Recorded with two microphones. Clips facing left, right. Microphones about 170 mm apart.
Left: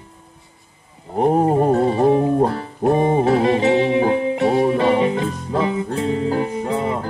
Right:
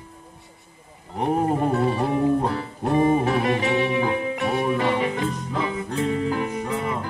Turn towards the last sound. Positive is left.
turn(degrees=35)  # may be behind; listen again after turning